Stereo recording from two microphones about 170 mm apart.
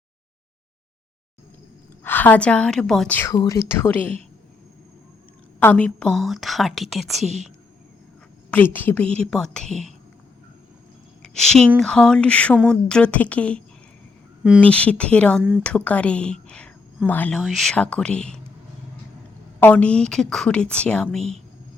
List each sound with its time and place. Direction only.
2.0 s a woman's voice: 10° left (ahead or behind)
3.2 s a woman's voice: 20° left (ahead or behind)
5.5 s a woman's voice: 10° left (ahead or behind)
8.5 s a woman's voice: 10° left (ahead or behind)
11.2 s a woman's voice: 5° left (ahead or behind)
14.6 s a woman's voice: 5° left (ahead or behind)
19.5 s a woman's voice: 10° left (ahead or behind)